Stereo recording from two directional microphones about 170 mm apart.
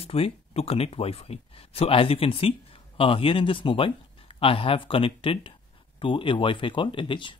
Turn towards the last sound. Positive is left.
turn(degrees=30)  # may be behind; listen again after turning